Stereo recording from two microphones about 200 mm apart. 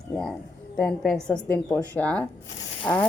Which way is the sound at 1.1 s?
5° left (ahead or behind).